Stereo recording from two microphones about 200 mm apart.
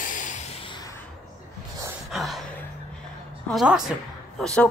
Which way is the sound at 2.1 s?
Centre (ahead or behind).